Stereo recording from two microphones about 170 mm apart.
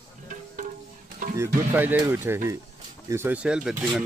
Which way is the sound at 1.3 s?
15° right (ahead or behind).